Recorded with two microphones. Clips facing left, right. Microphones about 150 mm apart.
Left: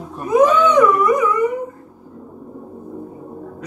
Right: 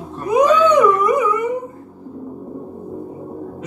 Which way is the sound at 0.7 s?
15° right (ahead or behind).